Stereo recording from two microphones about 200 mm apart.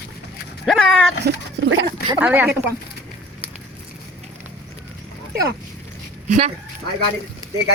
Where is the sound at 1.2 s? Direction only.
60° right (ahead or behind).